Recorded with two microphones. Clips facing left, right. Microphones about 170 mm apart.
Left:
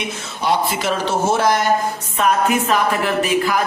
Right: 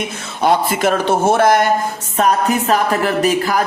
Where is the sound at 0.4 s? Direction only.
50° right (ahead or behind).